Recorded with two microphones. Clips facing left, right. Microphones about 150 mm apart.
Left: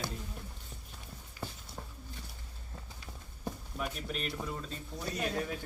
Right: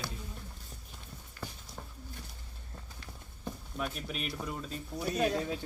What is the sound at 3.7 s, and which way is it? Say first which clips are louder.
Speech: right 2 dB; centre (ahead or behind).